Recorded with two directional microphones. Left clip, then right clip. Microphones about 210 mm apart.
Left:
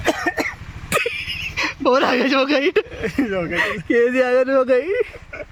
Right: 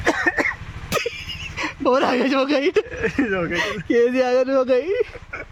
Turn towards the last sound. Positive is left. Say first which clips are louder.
# left 2 dB
turn(degrees=-5)  # may be behind; listen again after turning